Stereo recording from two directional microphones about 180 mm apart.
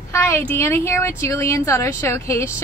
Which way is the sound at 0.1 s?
15° left (ahead or behind).